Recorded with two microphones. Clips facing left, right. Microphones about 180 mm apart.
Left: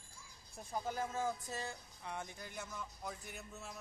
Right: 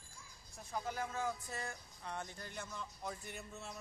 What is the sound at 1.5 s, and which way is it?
Speech, 15° left (ahead or behind).